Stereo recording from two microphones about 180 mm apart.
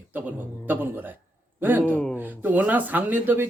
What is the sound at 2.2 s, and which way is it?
Speech, 10° right (ahead or behind).